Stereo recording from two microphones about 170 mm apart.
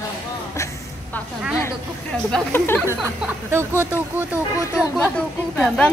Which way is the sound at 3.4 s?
15° right (ahead or behind).